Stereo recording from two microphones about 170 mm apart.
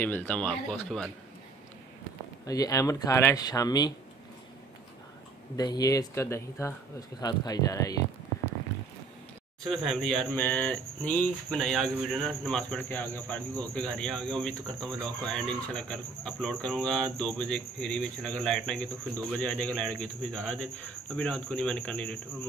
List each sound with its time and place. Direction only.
0.0 s speech: 10° left (ahead or behind)
2.4 s speech: 20° left (ahead or behind)
5.6 s speech: 20° left (ahead or behind)
9.6 s speech: centre (ahead or behind)